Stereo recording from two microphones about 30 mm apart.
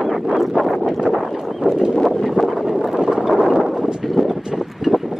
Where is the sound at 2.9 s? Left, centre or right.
Right.